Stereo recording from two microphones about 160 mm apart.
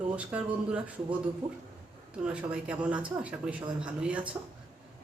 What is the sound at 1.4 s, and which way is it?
Speech, 45° right (ahead or behind).